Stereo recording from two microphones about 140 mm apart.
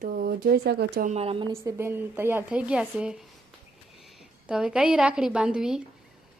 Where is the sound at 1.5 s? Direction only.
20° right (ahead or behind).